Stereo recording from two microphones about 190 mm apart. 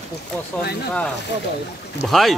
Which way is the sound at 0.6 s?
55° left (ahead or behind).